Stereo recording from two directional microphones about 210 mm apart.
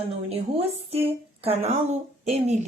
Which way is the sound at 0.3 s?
30° right (ahead or behind).